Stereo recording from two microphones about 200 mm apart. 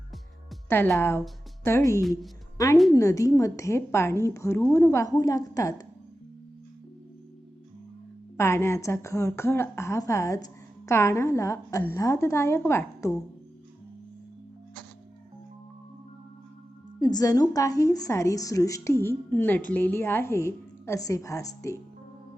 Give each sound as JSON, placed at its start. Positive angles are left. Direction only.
{"t": 0.7, "sound": "a woman's voice", "side_deg": 10}
{"t": 2.0, "sound": "a woman's voice", "side_deg": 0}
{"t": 2.6, "sound": "a woman's voice", "side_deg": 15}
{"t": 8.4, "sound": "a woman's voice", "side_deg": 15}
{"t": 17.0, "sound": "a woman's voice", "side_deg": 20}